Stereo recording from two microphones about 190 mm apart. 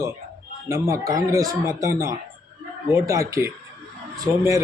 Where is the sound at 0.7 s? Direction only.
15° right (ahead or behind).